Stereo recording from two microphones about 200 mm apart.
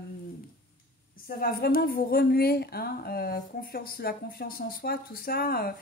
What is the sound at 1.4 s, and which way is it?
A woman's voice, 50° left (ahead or behind).